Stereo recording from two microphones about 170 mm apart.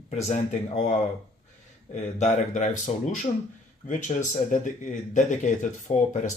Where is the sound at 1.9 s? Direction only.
45° left (ahead or behind).